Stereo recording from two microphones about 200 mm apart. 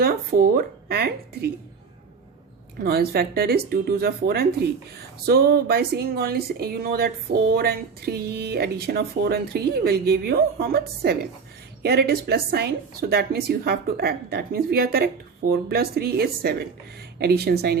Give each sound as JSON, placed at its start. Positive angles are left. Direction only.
{"t": 0.0, "sound": "speech", "side_deg": -50}
{"t": 2.8, "sound": "speech", "side_deg": -50}